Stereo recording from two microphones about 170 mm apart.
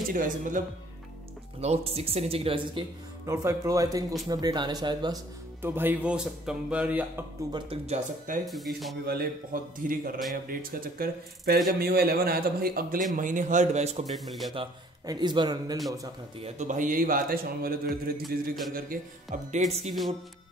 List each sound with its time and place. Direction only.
0.1 s speech: 50° right (ahead or behind)
1.6 s speech: 40° right (ahead or behind)
3.3 s a man's voice: 20° right (ahead or behind)
5.6 s speech: 10° right (ahead or behind)
7.5 s speech: 35° right (ahead or behind)
8.5 s speech: centre (ahead or behind)
9.0 s speech: 60° right (ahead or behind)
13.1 s speech: 50° right (ahead or behind)
14.1 s speech: centre (ahead or behind)
14.5 s a man's voice: 30° right (ahead or behind)
16.3 s speech: 45° right (ahead or behind)